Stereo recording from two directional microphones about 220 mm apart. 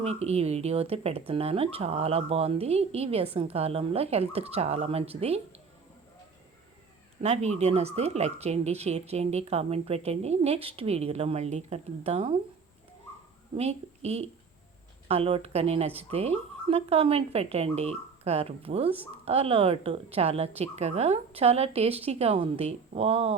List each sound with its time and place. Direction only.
0.0 s speech: 30° right (ahead or behind)
7.2 s speech: 30° right (ahead or behind)
13.6 s a woman's voice: 30° right (ahead or behind)